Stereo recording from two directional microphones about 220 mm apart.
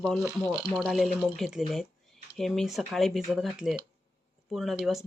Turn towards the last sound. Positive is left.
turn(degrees=0)  # may be behind; listen again after turning